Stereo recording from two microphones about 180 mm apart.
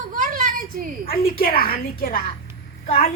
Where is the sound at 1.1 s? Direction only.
55° left (ahead or behind).